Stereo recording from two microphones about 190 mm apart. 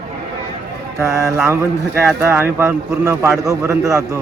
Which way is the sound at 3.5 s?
15° right (ahead or behind).